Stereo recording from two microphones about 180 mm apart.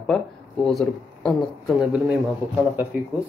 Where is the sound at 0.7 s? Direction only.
5° left (ahead or behind).